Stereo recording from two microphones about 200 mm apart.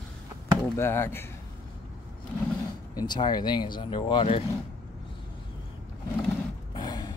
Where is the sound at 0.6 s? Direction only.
10° left (ahead or behind).